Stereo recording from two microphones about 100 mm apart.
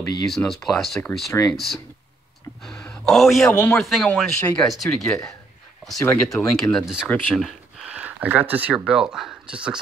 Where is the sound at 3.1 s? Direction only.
Centre (ahead or behind).